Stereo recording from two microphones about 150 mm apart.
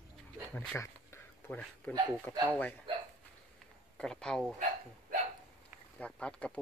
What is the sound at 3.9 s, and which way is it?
Speech, 5° left (ahead or behind).